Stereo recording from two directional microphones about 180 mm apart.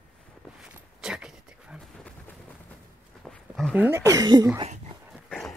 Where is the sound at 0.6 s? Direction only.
5° right (ahead or behind).